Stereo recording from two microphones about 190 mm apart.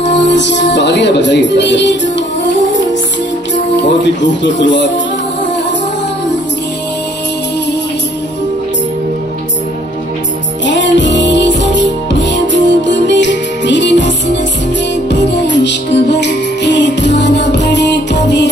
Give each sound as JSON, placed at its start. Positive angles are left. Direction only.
{"t": 0.0, "sound": "music", "side_deg": 65}
{"t": 0.7, "sound": "speech", "side_deg": 65}
{"t": 10.6, "sound": "music", "side_deg": 70}